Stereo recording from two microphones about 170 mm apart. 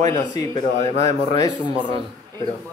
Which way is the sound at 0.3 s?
20° left (ahead or behind).